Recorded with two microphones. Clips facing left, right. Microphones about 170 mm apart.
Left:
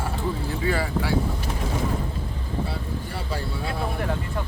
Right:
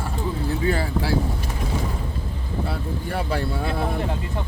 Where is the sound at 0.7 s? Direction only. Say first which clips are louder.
Left 2 dB; 30° right (ahead or behind).